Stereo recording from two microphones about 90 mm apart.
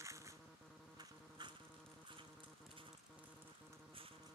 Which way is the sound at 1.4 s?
55° right (ahead or behind).